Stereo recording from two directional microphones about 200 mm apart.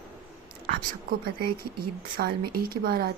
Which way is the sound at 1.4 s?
50° right (ahead or behind).